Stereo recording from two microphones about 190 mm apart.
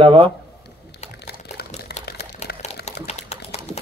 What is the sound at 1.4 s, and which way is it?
Pour, 55° left (ahead or behind).